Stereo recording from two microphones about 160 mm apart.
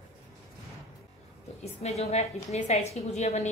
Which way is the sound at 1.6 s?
40° left (ahead or behind).